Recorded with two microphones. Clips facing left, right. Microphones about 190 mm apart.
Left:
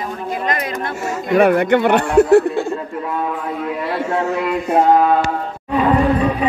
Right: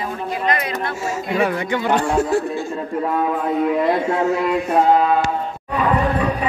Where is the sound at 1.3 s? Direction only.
60° left (ahead or behind).